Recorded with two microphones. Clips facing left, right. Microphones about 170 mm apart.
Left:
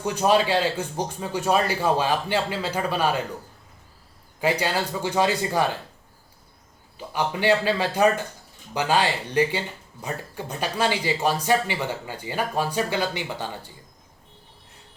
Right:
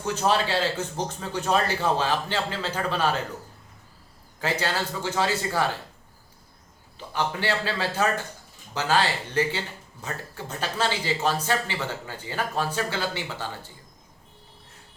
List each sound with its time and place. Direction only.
0.0 s speech: 15° left (ahead or behind)
4.4 s speech: 15° left (ahead or behind)
7.1 s speech: 15° left (ahead or behind)